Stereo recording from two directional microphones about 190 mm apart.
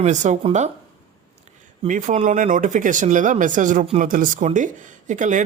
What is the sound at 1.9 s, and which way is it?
Speech, 40° right (ahead or behind).